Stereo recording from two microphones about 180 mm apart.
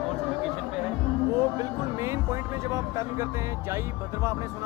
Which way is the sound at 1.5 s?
15° right (ahead or behind).